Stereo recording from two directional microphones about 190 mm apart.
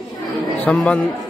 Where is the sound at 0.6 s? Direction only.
5° left (ahead or behind).